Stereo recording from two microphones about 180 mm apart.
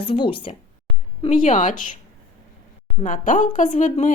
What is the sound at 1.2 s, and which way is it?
Speech, 45° left (ahead or behind).